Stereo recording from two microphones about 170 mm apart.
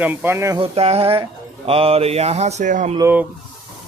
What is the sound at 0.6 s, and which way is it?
Speech, 35° right (ahead or behind).